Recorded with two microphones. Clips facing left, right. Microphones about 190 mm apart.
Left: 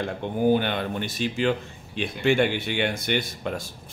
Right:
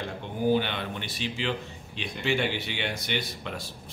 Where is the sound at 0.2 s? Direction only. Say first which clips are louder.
Left 3 dB; 50° left (ahead or behind).